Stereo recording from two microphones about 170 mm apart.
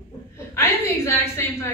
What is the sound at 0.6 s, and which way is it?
A woman's voice, 15° left (ahead or behind).